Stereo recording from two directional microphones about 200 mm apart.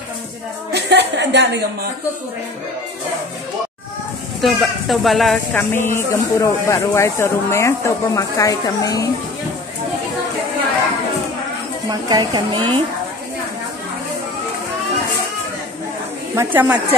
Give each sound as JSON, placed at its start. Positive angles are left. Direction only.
{"t": 0.7, "sound": "a sound", "side_deg": -55}
{"t": 4.4, "sound": "speech", "side_deg": 0}
{"t": 11.9, "sound": "speech", "side_deg": -20}
{"t": 16.3, "sound": "a woman's voice", "side_deg": -10}